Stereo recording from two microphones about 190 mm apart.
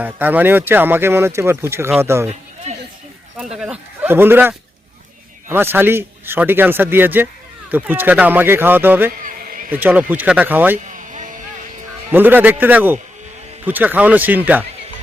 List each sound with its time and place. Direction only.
0.0 s speech: 10° right (ahead or behind)
3.6 s speech: 5° right (ahead or behind)
9.2 s a sound: 50° right (ahead or behind)
9.8 s speech: 10° right (ahead or behind)
10.8 s a sound: 40° right (ahead or behind)
12.1 s speech: 10° right (ahead or behind)